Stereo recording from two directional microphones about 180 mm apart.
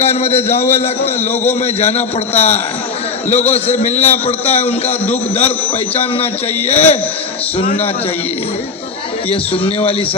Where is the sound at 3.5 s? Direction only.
40° left (ahead or behind).